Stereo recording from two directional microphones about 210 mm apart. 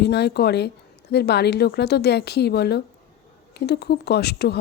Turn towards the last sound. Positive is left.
turn(degrees=50)  # may be behind; listen again after turning